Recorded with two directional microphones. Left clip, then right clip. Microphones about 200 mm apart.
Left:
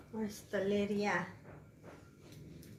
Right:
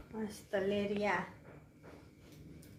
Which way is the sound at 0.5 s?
45° right (ahead or behind).